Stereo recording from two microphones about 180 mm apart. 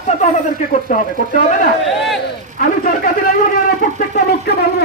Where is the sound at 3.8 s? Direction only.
55° left (ahead or behind).